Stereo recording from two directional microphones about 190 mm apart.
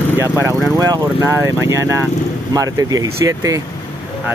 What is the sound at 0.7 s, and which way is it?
Speech, 20° right (ahead or behind).